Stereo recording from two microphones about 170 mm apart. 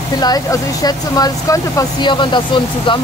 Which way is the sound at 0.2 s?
25° left (ahead or behind).